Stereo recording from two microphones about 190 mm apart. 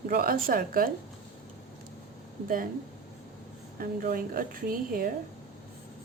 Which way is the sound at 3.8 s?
50° right (ahead or behind).